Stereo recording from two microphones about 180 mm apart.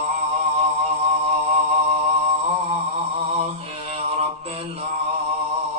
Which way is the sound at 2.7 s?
35° right (ahead or behind).